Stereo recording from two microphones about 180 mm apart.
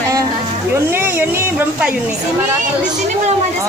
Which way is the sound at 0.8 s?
10° right (ahead or behind).